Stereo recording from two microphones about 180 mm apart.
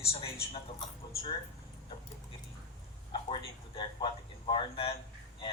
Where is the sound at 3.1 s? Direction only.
25° left (ahead or behind).